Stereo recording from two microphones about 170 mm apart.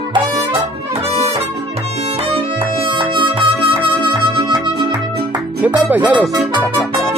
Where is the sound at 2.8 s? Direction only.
30° right (ahead or behind).